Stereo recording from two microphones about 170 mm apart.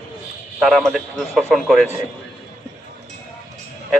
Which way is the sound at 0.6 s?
Centre (ahead or behind).